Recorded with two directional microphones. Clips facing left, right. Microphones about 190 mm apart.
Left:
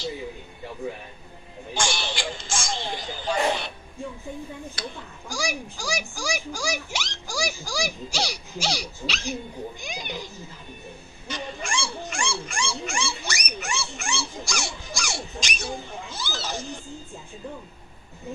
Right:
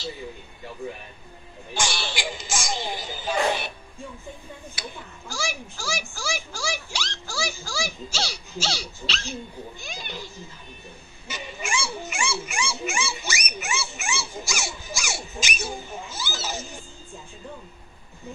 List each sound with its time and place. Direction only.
1.7 s a sound: 15° left (ahead or behind)
2.1 s music: 5° right (ahead or behind)
4.8 s speech: 10° right (ahead or behind)
5.3 s speech: 15° left (ahead or behind)
11.2 s dog: 5° right (ahead or behind)